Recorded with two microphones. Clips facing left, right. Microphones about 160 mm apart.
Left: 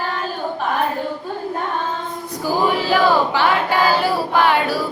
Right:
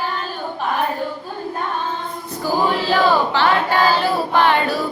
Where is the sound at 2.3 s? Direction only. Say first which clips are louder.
Even; 10° left (ahead or behind).